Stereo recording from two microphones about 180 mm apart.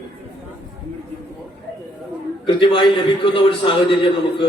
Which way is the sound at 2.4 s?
25° left (ahead or behind).